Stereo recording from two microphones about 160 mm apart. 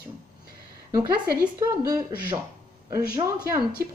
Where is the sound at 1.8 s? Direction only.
25° right (ahead or behind).